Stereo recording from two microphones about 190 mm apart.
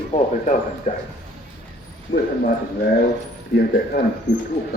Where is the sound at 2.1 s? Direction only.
65° left (ahead or behind).